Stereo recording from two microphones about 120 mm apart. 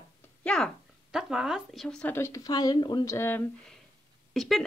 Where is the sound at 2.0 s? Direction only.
20° left (ahead or behind).